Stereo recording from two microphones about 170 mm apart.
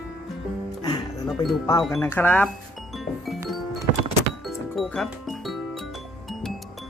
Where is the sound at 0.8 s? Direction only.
25° left (ahead or behind).